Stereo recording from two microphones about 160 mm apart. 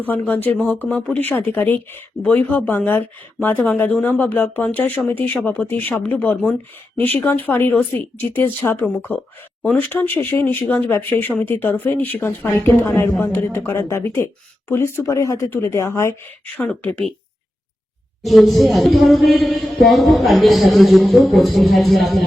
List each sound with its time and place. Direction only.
0.0 s speech: 10° left (ahead or behind)
18.3 s a man's voice: centre (ahead or behind)